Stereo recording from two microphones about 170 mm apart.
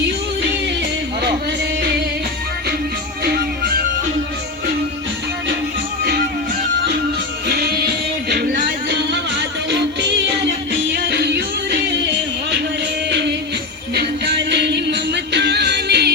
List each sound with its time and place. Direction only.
7.4 s music: 65° right (ahead or behind)
9.4 s music: 90° right
13.1 s music: 85° right